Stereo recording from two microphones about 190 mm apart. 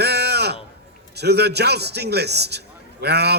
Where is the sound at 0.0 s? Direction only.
60° right (ahead or behind).